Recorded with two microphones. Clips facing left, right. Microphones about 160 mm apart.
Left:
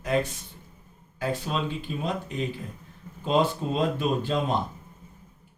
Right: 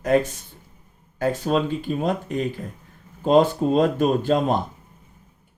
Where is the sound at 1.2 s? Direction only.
50° right (ahead or behind).